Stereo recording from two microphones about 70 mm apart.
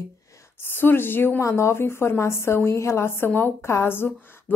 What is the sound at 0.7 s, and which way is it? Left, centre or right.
Speech, left.